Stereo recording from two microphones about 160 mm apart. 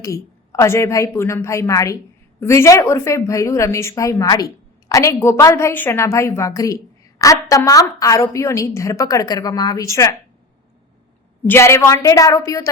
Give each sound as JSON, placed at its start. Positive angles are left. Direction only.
{"t": 0.0, "sound": "a woman's voice", "side_deg": 20}
{"t": 11.4, "sound": "a woman's voice", "side_deg": 15}